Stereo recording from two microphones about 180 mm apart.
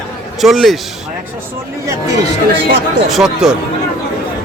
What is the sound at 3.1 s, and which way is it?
Speech, 5° right (ahead or behind).